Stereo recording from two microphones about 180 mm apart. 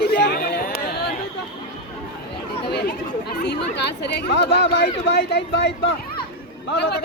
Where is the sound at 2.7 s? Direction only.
65° left (ahead or behind).